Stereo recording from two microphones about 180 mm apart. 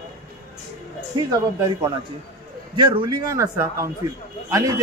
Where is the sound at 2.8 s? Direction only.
25° right (ahead or behind).